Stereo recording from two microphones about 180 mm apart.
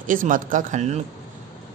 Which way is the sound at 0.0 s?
50° right (ahead or behind).